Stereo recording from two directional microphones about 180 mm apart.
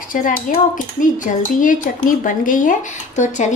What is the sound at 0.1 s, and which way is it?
Speech, 50° left (ahead or behind).